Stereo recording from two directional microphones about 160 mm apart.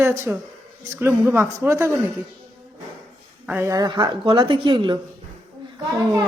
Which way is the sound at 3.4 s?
10° right (ahead or behind).